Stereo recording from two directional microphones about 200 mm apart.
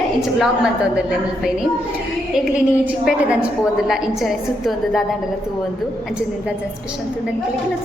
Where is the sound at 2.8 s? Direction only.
5° right (ahead or behind).